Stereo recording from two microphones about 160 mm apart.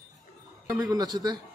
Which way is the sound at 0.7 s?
25° right (ahead or behind).